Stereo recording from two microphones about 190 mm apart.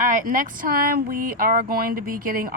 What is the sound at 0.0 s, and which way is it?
Speech, 45° right (ahead or behind).